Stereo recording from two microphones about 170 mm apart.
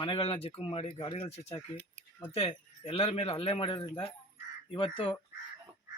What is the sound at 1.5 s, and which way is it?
Speech, 10° left (ahead or behind).